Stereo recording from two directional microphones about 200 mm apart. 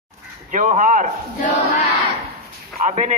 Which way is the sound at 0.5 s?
40° right (ahead or behind).